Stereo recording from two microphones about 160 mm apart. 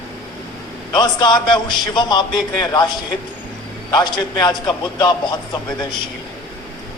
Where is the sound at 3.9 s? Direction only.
25° left (ahead or behind).